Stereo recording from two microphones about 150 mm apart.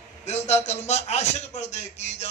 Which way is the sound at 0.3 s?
45° left (ahead or behind).